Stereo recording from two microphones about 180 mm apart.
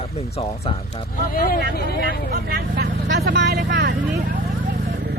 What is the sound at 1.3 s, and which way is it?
Speech, 55° left (ahead or behind).